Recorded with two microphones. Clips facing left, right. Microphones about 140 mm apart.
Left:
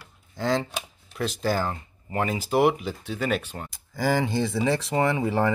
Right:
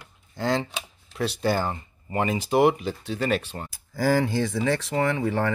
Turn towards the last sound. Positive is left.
turn(degrees=10)  # may be behind; listen again after turning